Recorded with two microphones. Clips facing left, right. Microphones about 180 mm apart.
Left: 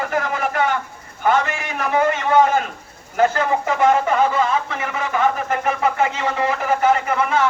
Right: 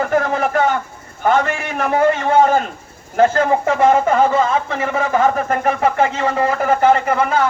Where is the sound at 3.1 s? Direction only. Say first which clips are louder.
Right 4 dB; 40° right (ahead or behind).